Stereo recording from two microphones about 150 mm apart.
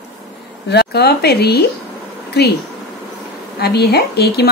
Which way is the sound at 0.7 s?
90° left.